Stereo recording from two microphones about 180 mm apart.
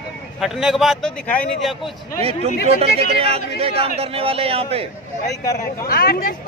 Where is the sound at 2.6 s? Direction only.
35° right (ahead or behind).